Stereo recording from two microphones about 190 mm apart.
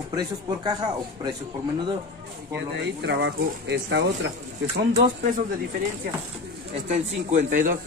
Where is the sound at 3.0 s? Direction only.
65° right (ahead or behind).